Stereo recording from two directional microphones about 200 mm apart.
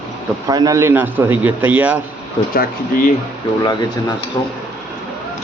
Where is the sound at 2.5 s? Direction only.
45° left (ahead or behind).